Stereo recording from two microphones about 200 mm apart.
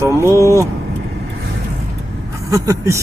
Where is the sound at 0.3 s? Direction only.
15° left (ahead or behind).